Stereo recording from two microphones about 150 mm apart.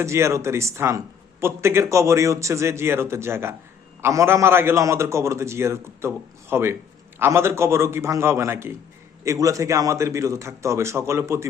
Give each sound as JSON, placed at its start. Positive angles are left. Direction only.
{"t": 0.0, "sound": "a man's voice", "side_deg": -20}